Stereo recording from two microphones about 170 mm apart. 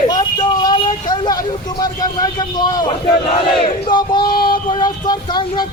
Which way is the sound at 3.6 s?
25° left (ahead or behind).